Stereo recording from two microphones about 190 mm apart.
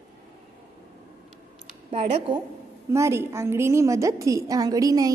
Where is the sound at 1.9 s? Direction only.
30° right (ahead or behind).